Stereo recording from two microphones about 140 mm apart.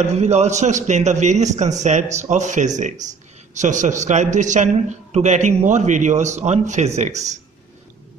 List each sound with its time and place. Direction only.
0.0 s a man's voice: 50° right (ahead or behind)